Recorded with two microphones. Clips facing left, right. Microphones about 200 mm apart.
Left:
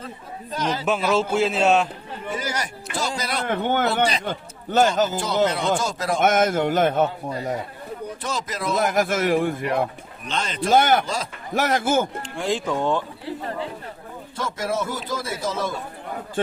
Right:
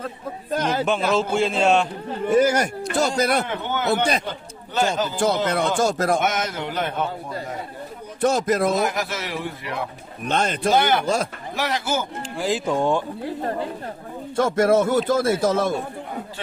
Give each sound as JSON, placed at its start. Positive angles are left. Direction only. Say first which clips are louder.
{"t": 0.5, "sound": "speech", "louder": "right 3 dB", "side_deg": -55}
{"t": 0.9, "sound": "a man's voice", "louder": "left 3 dB", "side_deg": 5}
{"t": 2.3, "sound": "speech", "louder": "right 12 dB", "side_deg": -50}
{"t": 3.4, "sound": "a man's voice", "louder": "left 3 dB", "side_deg": 55}
{"t": 5.1, "sound": "speech", "louder": "right 1 dB", "side_deg": -50}
{"t": 6.1, "sound": "a man's voice", "louder": "left 5 dB", "side_deg": 50}
{"t": 8.2, "sound": "speech", "louder": "right 12 dB", "side_deg": -55}
{"t": 8.7, "sound": "a man's voice", "louder": "left 2 dB", "side_deg": 50}
{"t": 10.2, "sound": "speech", "louder": "right 5 dB", "side_deg": -55}
{"t": 10.7, "sound": "a man's voice", "louder": "left 2 dB", "side_deg": 45}
{"t": 11.0, "sound": "speech", "louder": "right 6 dB", "side_deg": -55}
{"t": 11.5, "sound": "a man's voice", "louder": "left 4 dB", "side_deg": 50}
{"t": 12.4, "sound": "a man's voice", "louder": "right 2 dB", "side_deg": -5}
{"t": 14.3, "sound": "speech", "louder": "right 9 dB", "side_deg": -55}